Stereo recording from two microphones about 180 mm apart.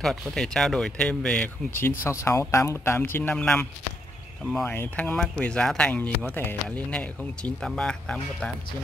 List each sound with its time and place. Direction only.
0.0 s speech: centre (ahead or behind)